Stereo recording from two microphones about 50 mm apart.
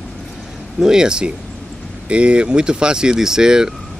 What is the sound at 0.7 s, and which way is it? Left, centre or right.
A man's voice, centre.